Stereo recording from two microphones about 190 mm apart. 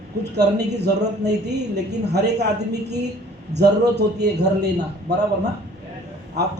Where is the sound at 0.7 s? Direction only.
60° right (ahead or behind).